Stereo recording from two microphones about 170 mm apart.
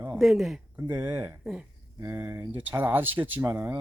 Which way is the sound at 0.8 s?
15° right (ahead or behind).